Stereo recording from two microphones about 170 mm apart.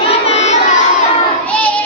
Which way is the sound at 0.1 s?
40° left (ahead or behind).